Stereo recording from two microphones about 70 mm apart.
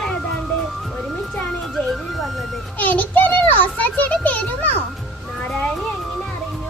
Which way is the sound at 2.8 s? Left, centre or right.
Left.